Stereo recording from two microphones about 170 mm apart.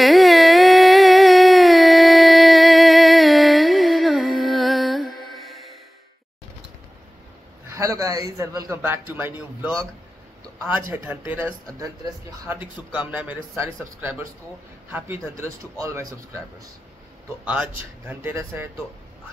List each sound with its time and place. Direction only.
0.0 s a sound: centre (ahead or behind)
7.7 s a man's voice: 20° right (ahead or behind)
10.7 s speech: 10° right (ahead or behind)
17.5 s speech: 10° right (ahead or behind)